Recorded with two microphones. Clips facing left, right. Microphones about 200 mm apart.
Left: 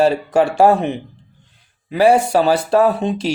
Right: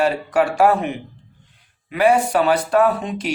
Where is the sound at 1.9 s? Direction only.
30° left (ahead or behind).